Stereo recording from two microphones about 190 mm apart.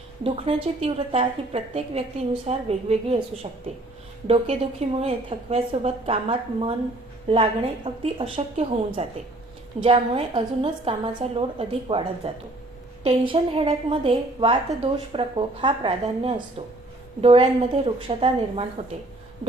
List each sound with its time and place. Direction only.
0.2 s a woman's voice: 30° right (ahead or behind)
4.9 s a woman's voice: 30° right (ahead or behind)